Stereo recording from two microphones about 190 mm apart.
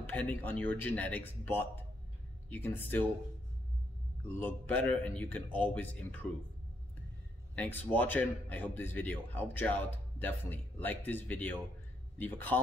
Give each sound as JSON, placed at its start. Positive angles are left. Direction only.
{"t": 0.0, "sound": "a man's voice", "side_deg": 10}
{"t": 4.4, "sound": "a man's voice", "side_deg": 10}
{"t": 7.5, "sound": "a man's voice", "side_deg": 10}